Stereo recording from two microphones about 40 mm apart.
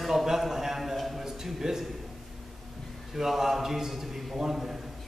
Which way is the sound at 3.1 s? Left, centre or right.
Centre.